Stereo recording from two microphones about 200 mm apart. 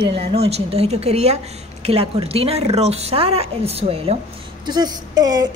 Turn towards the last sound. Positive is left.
turn(degrees=-20)  # may be behind; listen again after turning